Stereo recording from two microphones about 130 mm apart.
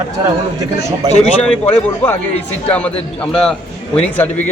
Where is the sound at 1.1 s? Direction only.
60° left (ahead or behind).